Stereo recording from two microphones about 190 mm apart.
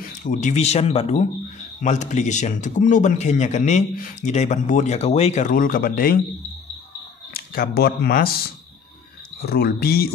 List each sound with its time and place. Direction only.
0.2 s speech: 40° left (ahead or behind)
7.5 s a man's voice: 55° left (ahead or behind)